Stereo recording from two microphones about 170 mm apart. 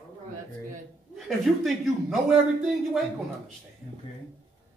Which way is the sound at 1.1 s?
Centre (ahead or behind).